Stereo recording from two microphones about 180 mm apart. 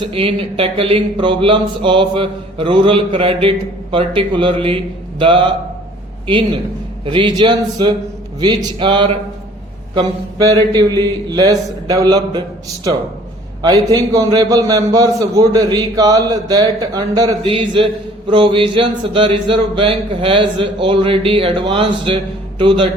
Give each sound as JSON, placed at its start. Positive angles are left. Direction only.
{"t": 0.1, "sound": "a man's voice", "side_deg": -30}
{"t": 7.0, "sound": "a man's voice", "side_deg": -25}